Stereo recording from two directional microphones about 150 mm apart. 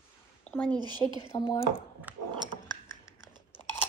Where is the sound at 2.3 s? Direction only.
30° right (ahead or behind).